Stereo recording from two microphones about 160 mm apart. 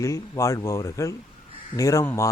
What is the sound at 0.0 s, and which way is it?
Speech, 20° left (ahead or behind).